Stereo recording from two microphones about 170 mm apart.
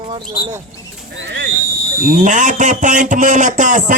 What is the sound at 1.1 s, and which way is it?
Speech, 90° right.